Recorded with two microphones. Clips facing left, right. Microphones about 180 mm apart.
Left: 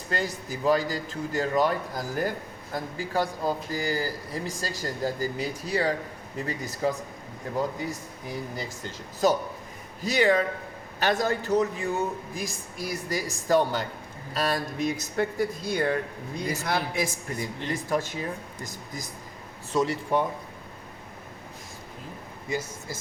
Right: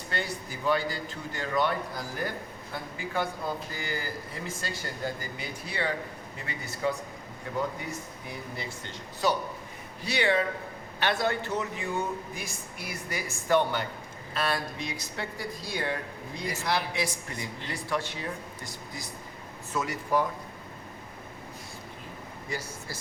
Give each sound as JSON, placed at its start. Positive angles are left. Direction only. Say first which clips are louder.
{"t": 0.1, "sound": "speech", "louder": "left 4 dB", "side_deg": 40}
{"t": 19.7, "sound": "speech", "louder": "left 4 dB", "side_deg": 30}
{"t": 22.4, "sound": "speech", "louder": "left 5 dB", "side_deg": 20}